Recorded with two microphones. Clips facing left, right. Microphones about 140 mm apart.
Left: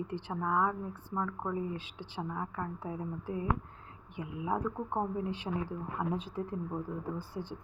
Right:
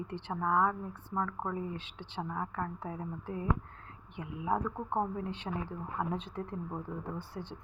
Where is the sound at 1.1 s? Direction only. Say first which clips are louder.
Right 1 dB; 20° left (ahead or behind).